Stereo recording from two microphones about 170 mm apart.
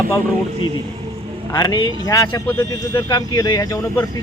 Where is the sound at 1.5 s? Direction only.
20° left (ahead or behind).